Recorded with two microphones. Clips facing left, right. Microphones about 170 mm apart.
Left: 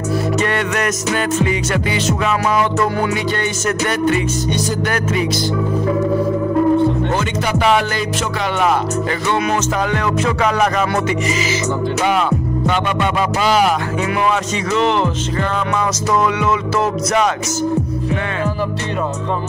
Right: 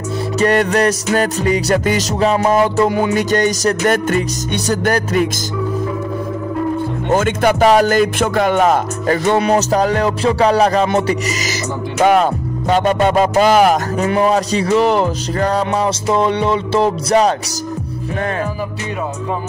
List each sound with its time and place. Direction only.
0.4 s speech: 35° right (ahead or behind)
3.1 s music: 45° right (ahead or behind)
7.1 s speech: 45° right (ahead or behind); by 11.1 s 30° right (ahead or behind)
12.1 s speech: 40° right (ahead or behind)